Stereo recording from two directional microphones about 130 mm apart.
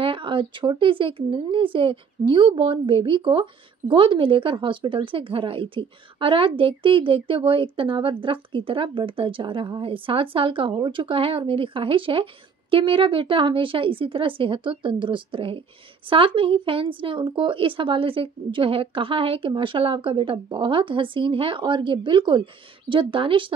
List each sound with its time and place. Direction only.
0.0 s speech: 40° right (ahead or behind)